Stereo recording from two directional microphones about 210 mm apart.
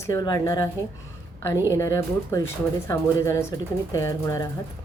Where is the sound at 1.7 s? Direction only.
15° left (ahead or behind).